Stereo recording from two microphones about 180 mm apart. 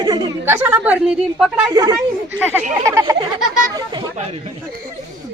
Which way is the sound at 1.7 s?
20° right (ahead or behind).